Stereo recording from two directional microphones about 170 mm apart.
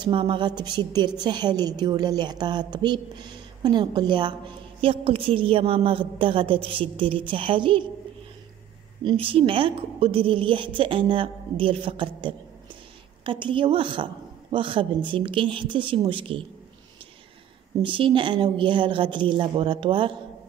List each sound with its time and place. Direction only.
0.0 s a woman's voice: 30° right (ahead or behind)
9.0 s a woman's voice: 30° right (ahead or behind)
17.8 s a woman's voice: 30° right (ahead or behind)